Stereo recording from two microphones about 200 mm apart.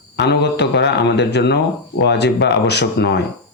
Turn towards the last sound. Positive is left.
turn(degrees=60)  # may be behind; listen again after turning